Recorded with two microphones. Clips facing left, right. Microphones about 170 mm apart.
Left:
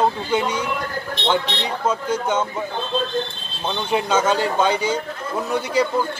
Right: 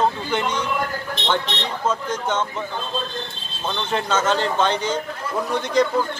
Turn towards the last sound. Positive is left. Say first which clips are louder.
# right 1 dB
turn(degrees=10)  # may be behind; listen again after turning